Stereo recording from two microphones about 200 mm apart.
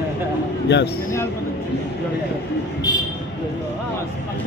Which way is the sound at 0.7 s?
60° left (ahead or behind).